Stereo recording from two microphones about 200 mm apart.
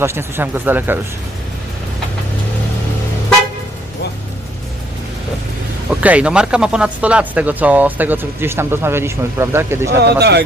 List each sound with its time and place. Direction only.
0.0 s speech: 10° right (ahead or behind)
5.9 s speech: 5° right (ahead or behind)
10.0 s speech: 55° right (ahead or behind)